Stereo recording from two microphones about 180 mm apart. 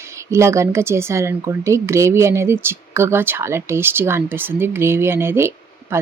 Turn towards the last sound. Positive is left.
turn(degrees=-15)  # may be behind; listen again after turning